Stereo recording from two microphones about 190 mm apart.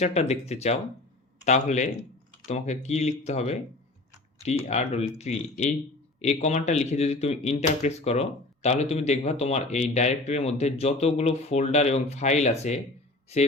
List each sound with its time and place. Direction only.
0.0 s speech: 35° left (ahead or behind)